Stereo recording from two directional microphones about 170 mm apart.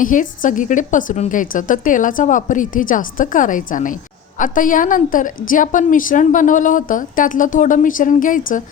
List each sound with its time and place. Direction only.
0.0 s a woman's voice: 50° left (ahead or behind)